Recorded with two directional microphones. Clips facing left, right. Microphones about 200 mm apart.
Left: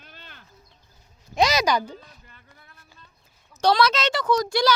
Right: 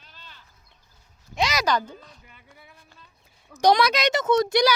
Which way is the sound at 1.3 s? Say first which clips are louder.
Left 5 dB; 40° left (ahead or behind).